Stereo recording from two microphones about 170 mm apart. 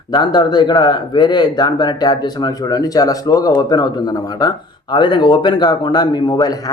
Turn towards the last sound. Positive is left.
turn(degrees=25)  # may be behind; listen again after turning